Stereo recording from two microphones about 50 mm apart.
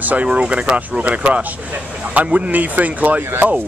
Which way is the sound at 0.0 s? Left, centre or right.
Right.